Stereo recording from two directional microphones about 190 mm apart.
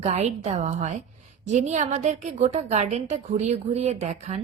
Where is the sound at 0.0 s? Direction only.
35° right (ahead or behind).